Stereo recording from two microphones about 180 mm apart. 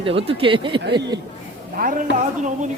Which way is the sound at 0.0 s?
30° right (ahead or behind).